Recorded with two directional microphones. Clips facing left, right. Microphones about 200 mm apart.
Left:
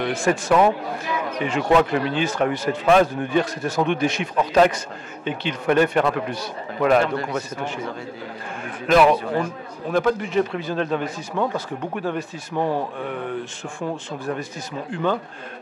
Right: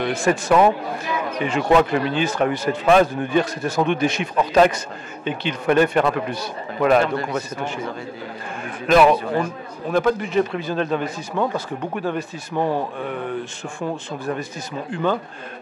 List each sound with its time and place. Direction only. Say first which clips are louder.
0.0 s a man's voice: right 1 dB; 10° right (ahead or behind); by 12.8 s 25° right (ahead or behind)